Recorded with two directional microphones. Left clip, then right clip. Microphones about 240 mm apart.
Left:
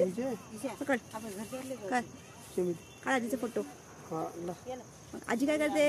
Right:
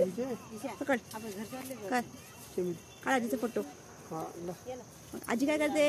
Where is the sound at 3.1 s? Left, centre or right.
Centre.